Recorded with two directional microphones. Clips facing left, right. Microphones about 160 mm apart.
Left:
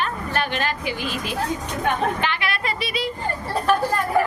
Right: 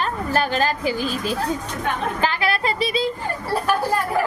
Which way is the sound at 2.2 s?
35° right (ahead or behind).